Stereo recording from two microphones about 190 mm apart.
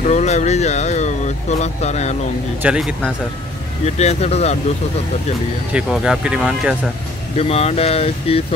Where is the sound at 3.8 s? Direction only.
35° left (ahead or behind).